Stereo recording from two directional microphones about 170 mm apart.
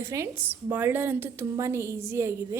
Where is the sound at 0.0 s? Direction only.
15° right (ahead or behind).